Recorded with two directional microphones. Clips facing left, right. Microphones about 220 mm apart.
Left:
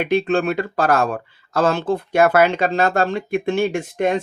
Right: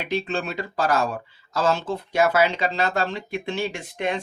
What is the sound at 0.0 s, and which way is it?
Speech, 55° left (ahead or behind).